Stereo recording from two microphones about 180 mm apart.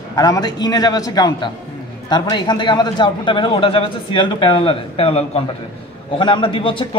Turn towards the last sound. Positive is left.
turn(degrees=30)  # may be behind; listen again after turning